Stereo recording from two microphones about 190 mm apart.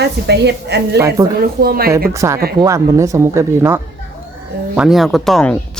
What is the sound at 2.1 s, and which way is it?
Speech, 15° right (ahead or behind).